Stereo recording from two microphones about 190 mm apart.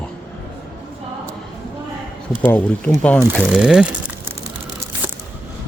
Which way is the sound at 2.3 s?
10° left (ahead or behind).